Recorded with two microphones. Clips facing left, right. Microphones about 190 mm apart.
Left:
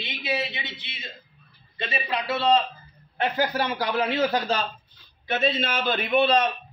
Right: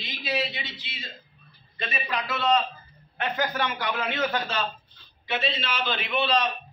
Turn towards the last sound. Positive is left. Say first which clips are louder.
# left 5 dB
turn(degrees=50)  # may be behind; listen again after turning